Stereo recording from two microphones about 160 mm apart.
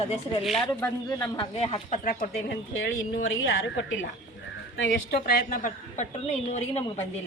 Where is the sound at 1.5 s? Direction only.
40° left (ahead or behind).